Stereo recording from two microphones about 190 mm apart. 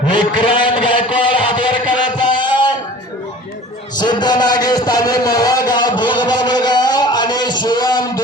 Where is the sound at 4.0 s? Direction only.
20° left (ahead or behind).